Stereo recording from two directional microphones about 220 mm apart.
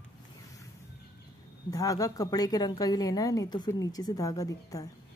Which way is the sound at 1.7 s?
15° left (ahead or behind).